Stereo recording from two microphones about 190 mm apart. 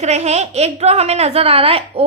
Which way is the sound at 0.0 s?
35° right (ahead or behind).